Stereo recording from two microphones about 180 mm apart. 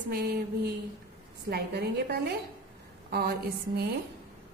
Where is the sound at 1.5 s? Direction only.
65° right (ahead or behind).